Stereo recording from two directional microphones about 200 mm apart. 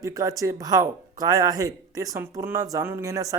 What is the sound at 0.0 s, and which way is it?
A man's voice, 15° right (ahead or behind).